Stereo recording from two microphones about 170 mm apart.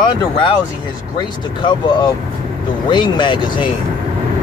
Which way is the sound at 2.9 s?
30° left (ahead or behind).